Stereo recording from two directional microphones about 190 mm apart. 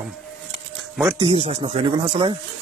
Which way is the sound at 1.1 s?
30° right (ahead or behind).